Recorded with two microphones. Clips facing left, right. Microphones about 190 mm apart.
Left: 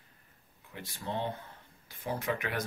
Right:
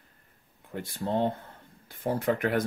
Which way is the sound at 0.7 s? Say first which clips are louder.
Right 8 dB; 50° right (ahead or behind).